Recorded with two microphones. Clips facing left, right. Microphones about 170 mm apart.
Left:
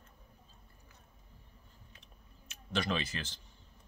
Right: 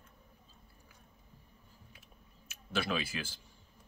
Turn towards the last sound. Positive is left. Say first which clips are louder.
# even
turn(degrees=-10)  # may be behind; listen again after turning